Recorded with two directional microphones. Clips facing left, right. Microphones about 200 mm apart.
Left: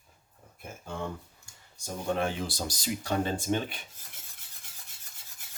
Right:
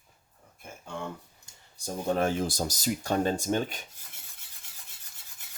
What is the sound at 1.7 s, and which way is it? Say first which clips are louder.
Speech: right 2 dB; 35° right (ahead or behind).